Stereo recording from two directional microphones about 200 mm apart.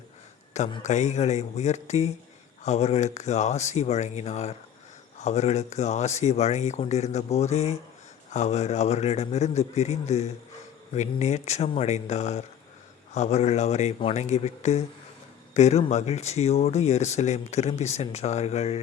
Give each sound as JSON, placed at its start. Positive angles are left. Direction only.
{"t": 0.5, "sound": "speech", "side_deg": 35}